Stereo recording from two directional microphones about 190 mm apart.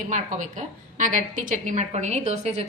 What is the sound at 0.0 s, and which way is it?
A woman's voice, 40° right (ahead or behind).